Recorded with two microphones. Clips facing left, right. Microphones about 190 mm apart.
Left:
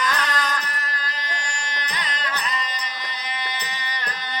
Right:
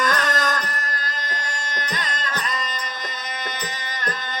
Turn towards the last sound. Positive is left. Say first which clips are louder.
# right 3 dB
turn(degrees=-45)  # may be behind; listen again after turning